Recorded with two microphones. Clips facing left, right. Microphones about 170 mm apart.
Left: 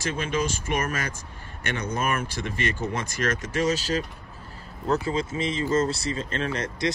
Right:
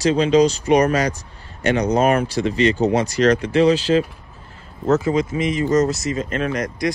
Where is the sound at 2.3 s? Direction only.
50° left (ahead or behind).